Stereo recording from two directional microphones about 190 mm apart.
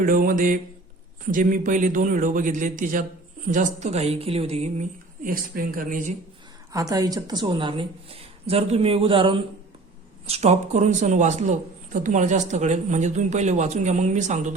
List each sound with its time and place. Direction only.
0.0 s a man's voice: 45° right (ahead or behind)
6.7 s speech: 20° right (ahead or behind); by 14.5 s 40° right (ahead or behind)